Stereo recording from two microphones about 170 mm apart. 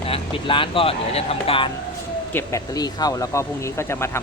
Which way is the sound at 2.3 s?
15° left (ahead or behind).